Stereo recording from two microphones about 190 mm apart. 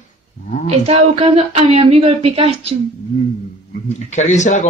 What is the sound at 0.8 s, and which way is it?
Speech, 35° right (ahead or behind).